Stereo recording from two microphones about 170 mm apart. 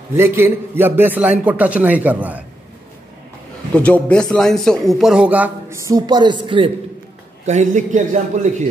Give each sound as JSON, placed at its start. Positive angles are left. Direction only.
{"t": 0.1, "sound": "a man's voice", "side_deg": -15}
{"t": 3.7, "sound": "a man's voice", "side_deg": 10}
{"t": 7.4, "sound": "a man's voice", "side_deg": -45}